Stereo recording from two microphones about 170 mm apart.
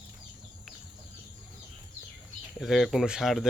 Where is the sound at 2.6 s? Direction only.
Centre (ahead or behind).